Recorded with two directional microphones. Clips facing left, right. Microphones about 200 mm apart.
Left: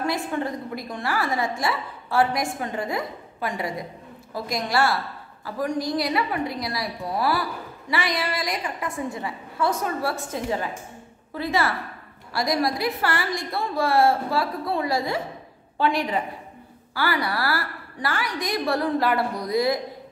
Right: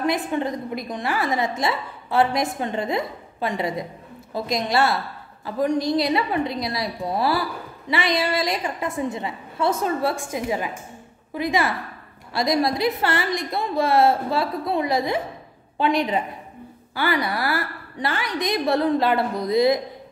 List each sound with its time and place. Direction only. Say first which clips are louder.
0.0 s a woman's voice: right 3 dB; 20° right (ahead or behind)
10.1 s a woman's voice: right 2 dB; 10° right (ahead or behind)